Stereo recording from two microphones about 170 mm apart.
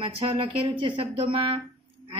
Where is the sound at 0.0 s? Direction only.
30° right (ahead or behind).